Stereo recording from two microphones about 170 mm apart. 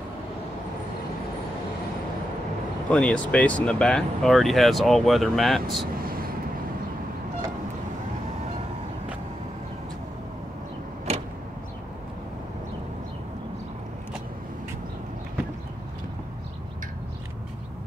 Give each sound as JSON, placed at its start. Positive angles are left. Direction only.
{"t": 2.9, "sound": "speech", "side_deg": 5}
{"t": 6.0, "sound": "vehicle", "side_deg": -60}
{"t": 11.1, "sound": "vehicle", "side_deg": -40}